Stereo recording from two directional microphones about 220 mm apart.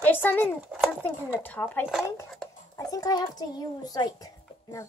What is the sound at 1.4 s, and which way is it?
Speech, 10° left (ahead or behind).